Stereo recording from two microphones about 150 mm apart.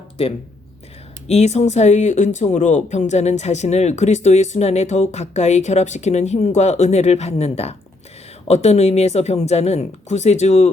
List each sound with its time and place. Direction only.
1.3 s speech: 50° left (ahead or behind)